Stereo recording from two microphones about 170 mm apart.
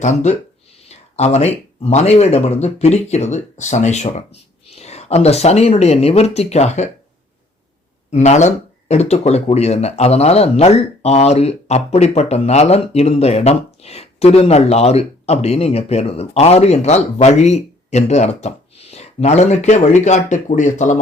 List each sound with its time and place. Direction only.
0.0 s speech: 45° left (ahead or behind)
8.1 s speech: 45° left (ahead or behind)